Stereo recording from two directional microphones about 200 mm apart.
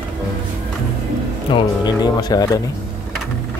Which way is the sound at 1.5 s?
20° left (ahead or behind).